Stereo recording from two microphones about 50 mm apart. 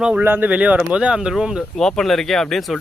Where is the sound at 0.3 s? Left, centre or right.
Right.